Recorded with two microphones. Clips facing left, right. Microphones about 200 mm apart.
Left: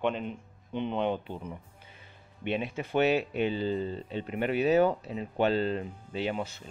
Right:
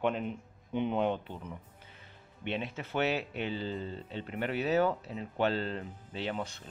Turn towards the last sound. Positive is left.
turn(degrees=5)  # may be behind; listen again after turning